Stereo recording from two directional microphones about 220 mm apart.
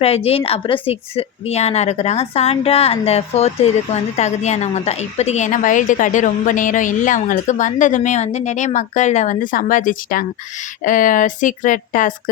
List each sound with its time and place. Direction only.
0.0 s a woman's voice: 25° left (ahead or behind)